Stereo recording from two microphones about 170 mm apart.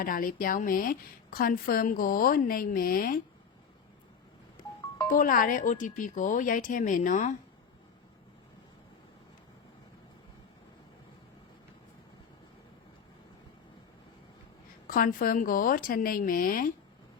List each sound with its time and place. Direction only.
0.0 s a woman's voice: 55° left (ahead or behind)
5.0 s speech: 55° left (ahead or behind)
14.8 s a woman's voice: 55° left (ahead or behind)